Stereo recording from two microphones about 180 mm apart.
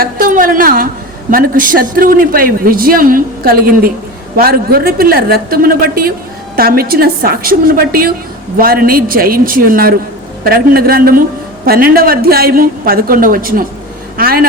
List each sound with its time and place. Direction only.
0.0 s a man's voice: 50° right (ahead or behind)